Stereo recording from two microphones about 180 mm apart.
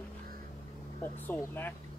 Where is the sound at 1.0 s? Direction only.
10° left (ahead or behind).